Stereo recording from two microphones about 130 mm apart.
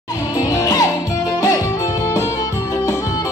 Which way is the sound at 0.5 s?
25° left (ahead or behind).